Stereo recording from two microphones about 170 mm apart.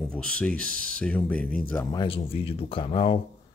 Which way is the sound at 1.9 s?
30° left (ahead or behind).